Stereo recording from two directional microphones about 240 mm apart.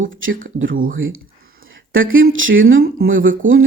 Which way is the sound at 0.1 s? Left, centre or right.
Right.